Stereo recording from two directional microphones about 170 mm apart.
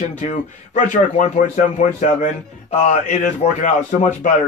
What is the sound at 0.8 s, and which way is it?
Speech, 45° left (ahead or behind).